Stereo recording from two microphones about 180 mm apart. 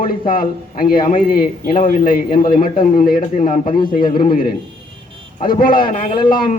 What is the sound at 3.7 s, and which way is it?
Speech, 25° left (ahead or behind).